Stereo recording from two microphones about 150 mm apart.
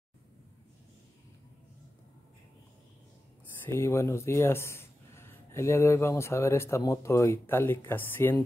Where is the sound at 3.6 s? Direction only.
20° left (ahead or behind).